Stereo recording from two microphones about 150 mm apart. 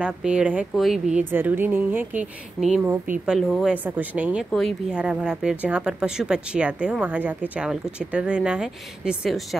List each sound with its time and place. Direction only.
0.0 s speech: 5° right (ahead or behind)
2.6 s a woman's voice: centre (ahead or behind)
3.7 s speech: 10° right (ahead or behind)